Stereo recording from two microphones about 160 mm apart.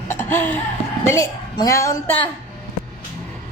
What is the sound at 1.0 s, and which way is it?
Speech, 20° left (ahead or behind).